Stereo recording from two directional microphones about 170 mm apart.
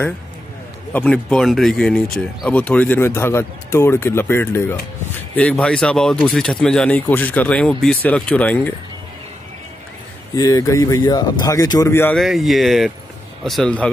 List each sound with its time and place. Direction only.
0.9 s speech: 5° left (ahead or behind)
10.3 s speech: 20° left (ahead or behind)
12.2 s speech: centre (ahead or behind)